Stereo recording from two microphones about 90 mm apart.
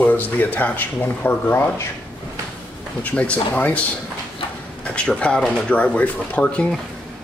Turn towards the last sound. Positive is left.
turn(degrees=15)  # may be behind; listen again after turning